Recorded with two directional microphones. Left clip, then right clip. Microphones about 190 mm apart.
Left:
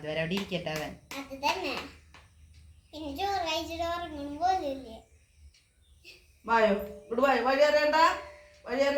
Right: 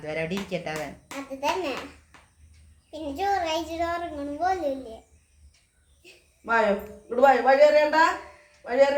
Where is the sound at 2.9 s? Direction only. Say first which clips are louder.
Right 5 dB; 20° right (ahead or behind).